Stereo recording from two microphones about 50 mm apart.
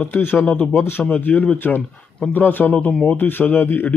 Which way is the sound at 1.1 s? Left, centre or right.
Left.